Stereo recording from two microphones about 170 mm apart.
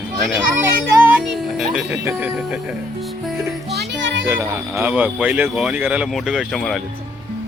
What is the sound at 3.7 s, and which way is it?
Music, 90° right.